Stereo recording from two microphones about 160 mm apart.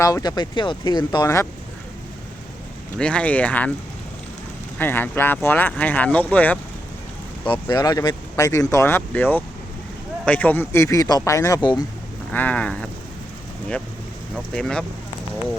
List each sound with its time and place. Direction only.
0.0 s speech: 25° left (ahead or behind)
3.0 s speech: 5° left (ahead or behind)
4.8 s speech: 15° left (ahead or behind)
7.4 s speech: 25° left (ahead or behind)
12.3 s speech: 10° left (ahead or behind)
14.5 s speech: 5° left (ahead or behind)